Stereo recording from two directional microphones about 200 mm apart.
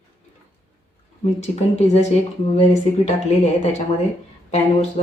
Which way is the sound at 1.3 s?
35° left (ahead or behind).